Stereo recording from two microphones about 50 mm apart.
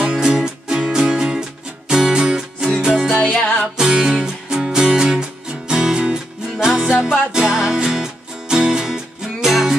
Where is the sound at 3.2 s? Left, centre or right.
Centre.